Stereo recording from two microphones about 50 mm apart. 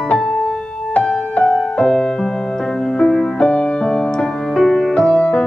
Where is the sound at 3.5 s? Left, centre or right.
Left.